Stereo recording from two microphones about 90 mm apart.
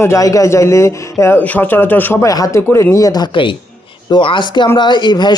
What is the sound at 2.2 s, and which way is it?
Speech, 40° left (ahead or behind).